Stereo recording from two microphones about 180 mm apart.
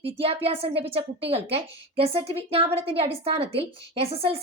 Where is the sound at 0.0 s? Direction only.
35° right (ahead or behind).